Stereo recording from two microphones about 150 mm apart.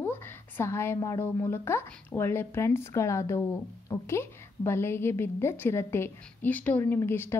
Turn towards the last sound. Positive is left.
turn(degrees=15)  # may be behind; listen again after turning